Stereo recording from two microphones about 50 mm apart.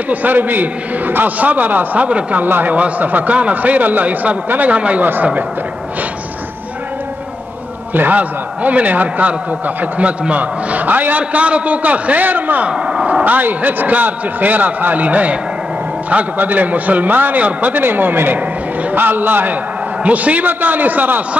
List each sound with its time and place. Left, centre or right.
0.1 s a man's voice: right
2.0 s speech: right
2.4 s a man's voice: right
7.9 s a man's voice: right
12.6 s a man's voice: right
20.0 s a man's voice: right